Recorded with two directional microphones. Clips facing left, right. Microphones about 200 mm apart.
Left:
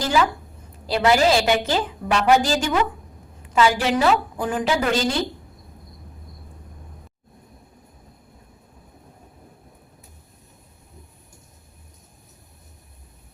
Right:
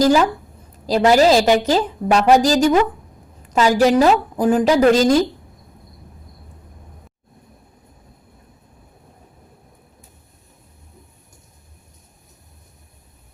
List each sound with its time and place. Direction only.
0.0 s a woman's voice: 40° right (ahead or behind)